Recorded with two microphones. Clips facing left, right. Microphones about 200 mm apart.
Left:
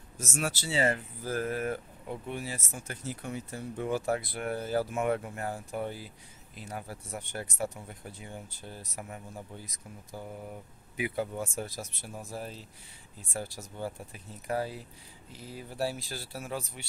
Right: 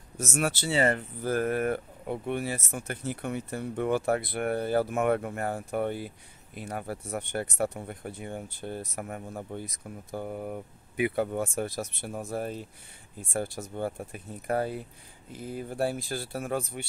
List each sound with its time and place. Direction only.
0.2 s speech: 60° right (ahead or behind)